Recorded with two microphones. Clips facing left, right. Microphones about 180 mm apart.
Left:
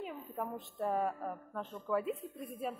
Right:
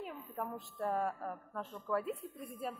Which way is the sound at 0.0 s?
Centre (ahead or behind).